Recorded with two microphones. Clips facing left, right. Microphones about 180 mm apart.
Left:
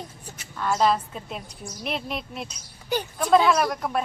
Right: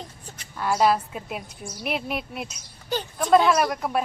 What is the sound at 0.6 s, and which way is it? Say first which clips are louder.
A woman's voice: right 1 dB; 10° right (ahead or behind).